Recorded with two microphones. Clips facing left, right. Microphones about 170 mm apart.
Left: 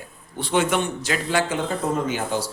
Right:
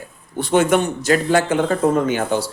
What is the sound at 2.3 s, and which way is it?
Speech, 65° right (ahead or behind).